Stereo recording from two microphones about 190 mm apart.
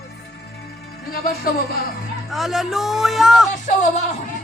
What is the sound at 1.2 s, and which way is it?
Speech, 50° left (ahead or behind).